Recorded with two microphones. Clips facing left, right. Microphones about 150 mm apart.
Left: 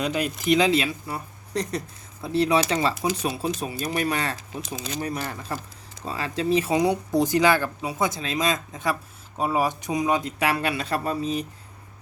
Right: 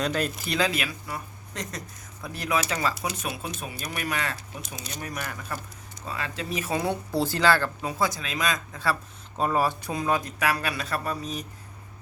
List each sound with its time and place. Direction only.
0.0 s speech: 10° left (ahead or behind); by 6.7 s 30° left (ahead or behind)
6.7 s a woman's voice: 15° left (ahead or behind)
8.0 s speech: 25° left (ahead or behind)